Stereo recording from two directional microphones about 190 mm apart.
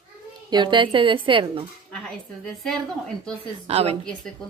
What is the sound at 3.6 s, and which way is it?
Speech, 30° right (ahead or behind).